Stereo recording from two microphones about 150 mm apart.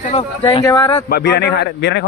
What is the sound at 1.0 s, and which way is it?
Speech, 90° left.